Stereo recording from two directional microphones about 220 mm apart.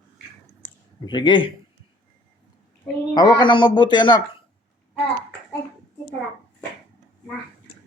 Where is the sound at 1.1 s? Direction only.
20° left (ahead or behind).